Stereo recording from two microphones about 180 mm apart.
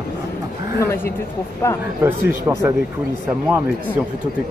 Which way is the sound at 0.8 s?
15° left (ahead or behind).